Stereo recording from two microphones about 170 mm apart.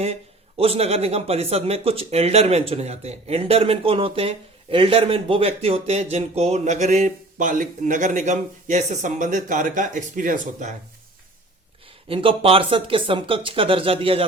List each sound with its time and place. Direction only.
0.0 s a man's voice: 35° right (ahead or behind)
12.0 s a man's voice: 30° right (ahead or behind)